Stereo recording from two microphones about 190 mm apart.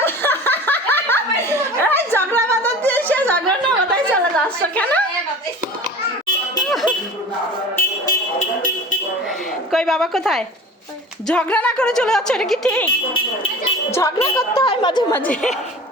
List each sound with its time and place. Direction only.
0.0 s a sound: 10° left (ahead or behind)
8.4 s vehicle horn: 45° left (ahead or behind)
9.7 s speech: centre (ahead or behind)
13.9 s speech: 15° left (ahead or behind)
15.1 s speech: 10° left (ahead or behind)